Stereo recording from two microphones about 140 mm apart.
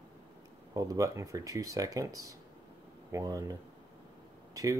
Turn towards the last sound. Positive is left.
turn(degrees=-25)  # may be behind; listen again after turning